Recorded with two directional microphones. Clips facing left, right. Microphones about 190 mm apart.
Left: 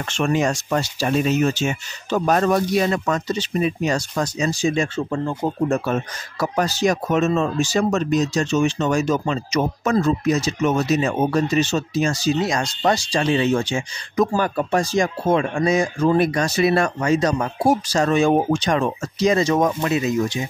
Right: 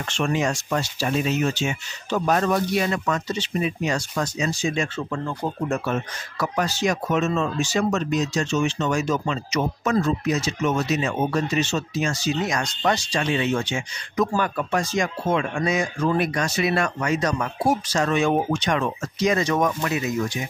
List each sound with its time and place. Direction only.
0.1 s speech: 45° left (ahead or behind); by 20.4 s 25° left (ahead or behind)